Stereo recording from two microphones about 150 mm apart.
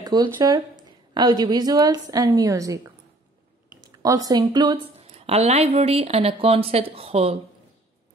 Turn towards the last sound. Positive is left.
turn(degrees=-40)  # may be behind; listen again after turning